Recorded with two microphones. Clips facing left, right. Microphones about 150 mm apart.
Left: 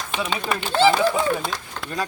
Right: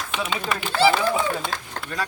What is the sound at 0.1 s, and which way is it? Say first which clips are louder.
Speech: left 2 dB; 30° left (ahead or behind).